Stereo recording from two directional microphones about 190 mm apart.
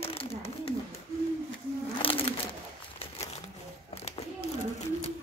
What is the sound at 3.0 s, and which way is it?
Crumpling, 35° left (ahead or behind).